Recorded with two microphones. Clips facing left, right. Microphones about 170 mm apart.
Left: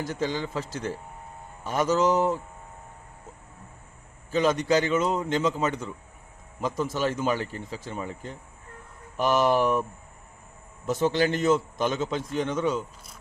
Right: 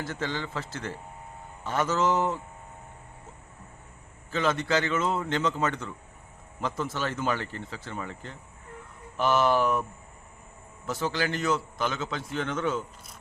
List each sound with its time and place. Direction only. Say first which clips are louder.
0.1 s speech: left 4 dB; 15° left (ahead or behind)
4.3 s speech: left 4 dB; 15° left (ahead or behind)
10.8 s a man's voice: left 6 dB; 20° left (ahead or behind)